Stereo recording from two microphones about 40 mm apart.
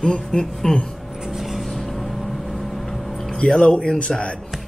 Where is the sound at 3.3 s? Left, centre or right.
Centre.